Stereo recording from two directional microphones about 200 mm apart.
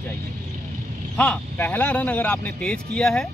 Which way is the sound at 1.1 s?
5° left (ahead or behind).